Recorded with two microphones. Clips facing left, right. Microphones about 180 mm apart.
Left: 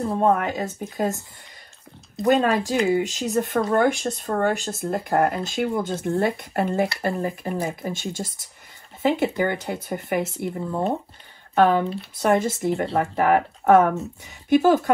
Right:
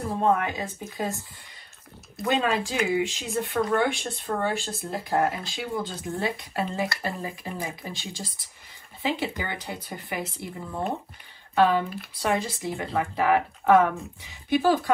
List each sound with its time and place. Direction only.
0.2 s speech: 45° left (ahead or behind)
2.2 s speech: 40° left (ahead or behind)
11.5 s speech: 55° left (ahead or behind)